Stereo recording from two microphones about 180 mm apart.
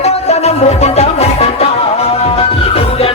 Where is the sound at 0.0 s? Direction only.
40° left (ahead or behind).